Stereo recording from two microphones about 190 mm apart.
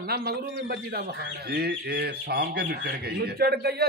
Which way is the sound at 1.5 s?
55° right (ahead or behind).